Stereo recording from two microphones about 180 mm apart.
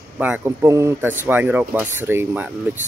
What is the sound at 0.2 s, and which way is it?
Speech, 15° right (ahead or behind).